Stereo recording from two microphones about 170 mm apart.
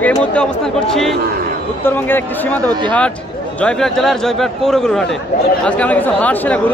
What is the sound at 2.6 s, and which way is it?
Speech, 25° right (ahead or behind).